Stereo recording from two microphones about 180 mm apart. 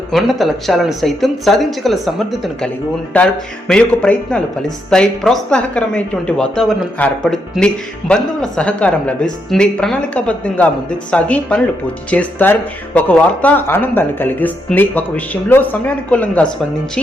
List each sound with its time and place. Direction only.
0.1 s speech: centre (ahead or behind)
3.7 s speech: 5° left (ahead or behind)